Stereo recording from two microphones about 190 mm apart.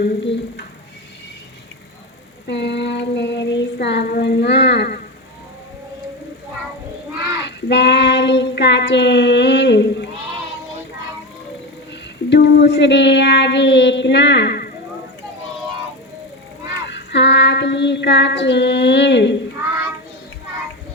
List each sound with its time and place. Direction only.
0.0 s a sound: 65° left (ahead or behind)
2.5 s child singing: 65° left (ahead or behind)
7.4 s child singing: 65° left (ahead or behind)
12.3 s child singing: 65° left (ahead or behind)
16.9 s child singing: 65° left (ahead or behind)